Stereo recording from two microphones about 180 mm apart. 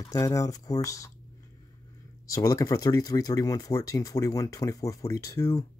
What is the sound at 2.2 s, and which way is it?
Speech, 20° left (ahead or behind).